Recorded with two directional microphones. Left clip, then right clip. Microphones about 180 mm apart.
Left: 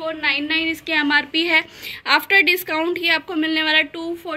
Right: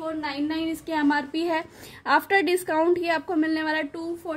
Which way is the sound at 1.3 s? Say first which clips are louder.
Left 9 dB; 35° right (ahead or behind).